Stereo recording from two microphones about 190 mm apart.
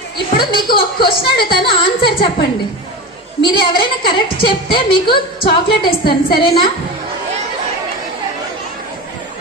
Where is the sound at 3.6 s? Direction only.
25° left (ahead or behind).